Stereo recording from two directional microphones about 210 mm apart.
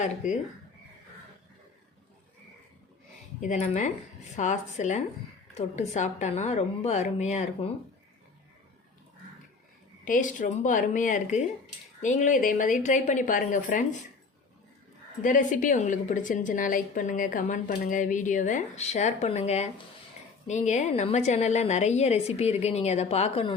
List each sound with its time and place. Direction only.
0.2 s a woman's voice: 35° left (ahead or behind)
3.4 s a woman's voice: 35° left (ahead or behind)
10.0 s a woman's voice: 40° left (ahead or behind)
15.2 s a woman's voice: 35° left (ahead or behind)